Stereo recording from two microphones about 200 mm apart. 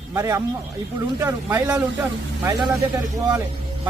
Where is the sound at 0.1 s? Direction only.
15° right (ahead or behind).